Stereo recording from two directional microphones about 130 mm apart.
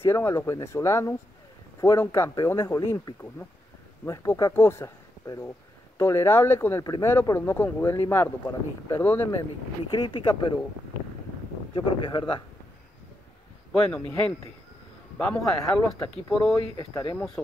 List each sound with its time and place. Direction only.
0.0 s speech: 20° left (ahead or behind)
9.9 s speech: 40° left (ahead or behind)
11.7 s speech: 40° left (ahead or behind)
15.1 s speech: 5° left (ahead or behind)
16.7 s speech: 30° left (ahead or behind)